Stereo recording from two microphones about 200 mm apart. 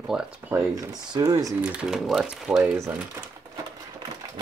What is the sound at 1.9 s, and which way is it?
Speech, centre (ahead or behind).